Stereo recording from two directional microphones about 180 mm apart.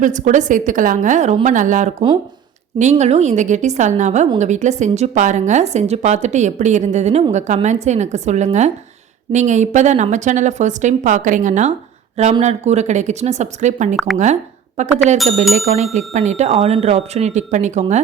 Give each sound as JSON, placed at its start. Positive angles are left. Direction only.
{"t": 0.0, "sound": "a woman's voice", "side_deg": -45}